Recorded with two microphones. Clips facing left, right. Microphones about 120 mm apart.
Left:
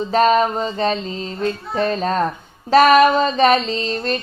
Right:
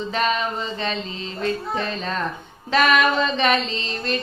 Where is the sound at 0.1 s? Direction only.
40° left (ahead or behind).